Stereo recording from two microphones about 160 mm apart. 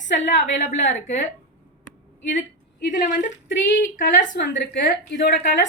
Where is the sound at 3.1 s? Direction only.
50° left (ahead or behind).